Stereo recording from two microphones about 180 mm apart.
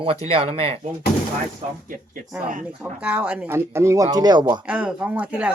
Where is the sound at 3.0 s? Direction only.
5° right (ahead or behind); by 4.6 s 25° right (ahead or behind).